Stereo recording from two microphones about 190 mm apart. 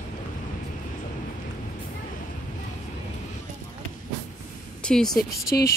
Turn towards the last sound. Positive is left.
turn(degrees=55)  # may be behind; listen again after turning